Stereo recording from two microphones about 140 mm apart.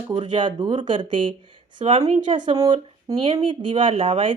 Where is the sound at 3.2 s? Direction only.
45° right (ahead or behind).